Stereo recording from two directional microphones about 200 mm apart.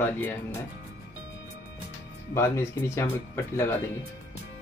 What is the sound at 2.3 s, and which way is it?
Speech, 15° left (ahead or behind).